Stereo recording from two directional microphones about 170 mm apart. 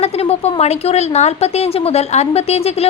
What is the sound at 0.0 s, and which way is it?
A woman's voice, 35° left (ahead or behind).